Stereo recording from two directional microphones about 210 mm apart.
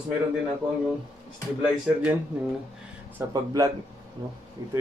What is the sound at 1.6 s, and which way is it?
Speech, 5° right (ahead or behind).